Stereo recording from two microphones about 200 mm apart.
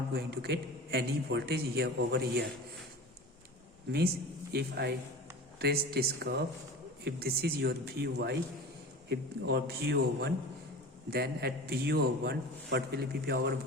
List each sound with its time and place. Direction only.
0.1 s a man's voice: 55° right (ahead or behind)
4.5 s a man's voice: 55° right (ahead or behind)